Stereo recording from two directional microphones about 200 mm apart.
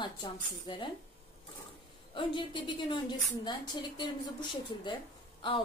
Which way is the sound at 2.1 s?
25° left (ahead or behind).